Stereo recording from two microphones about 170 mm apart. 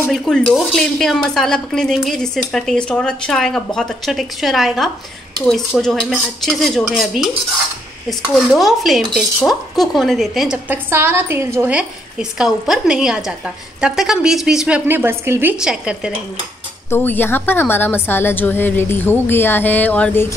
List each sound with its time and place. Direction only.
0.1 s dishes: centre (ahead or behind)
16.9 s a woman's voice: 10° left (ahead or behind)